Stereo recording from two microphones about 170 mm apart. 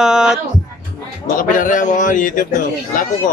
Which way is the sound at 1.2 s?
50° left (ahead or behind).